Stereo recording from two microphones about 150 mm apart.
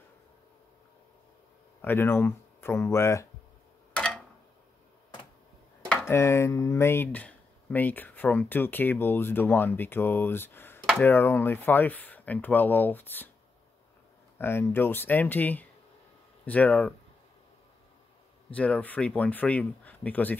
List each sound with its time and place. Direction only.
1.8 s speech: 15° left (ahead or behind)
3.9 s tick-tock: 5° left (ahead or behind)
5.9 s speech: 15° left (ahead or behind)
14.4 s speech: 15° left (ahead or behind)
18.5 s speech: 10° left (ahead or behind)